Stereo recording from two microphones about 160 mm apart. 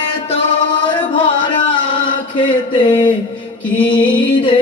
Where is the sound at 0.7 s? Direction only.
30° left (ahead or behind).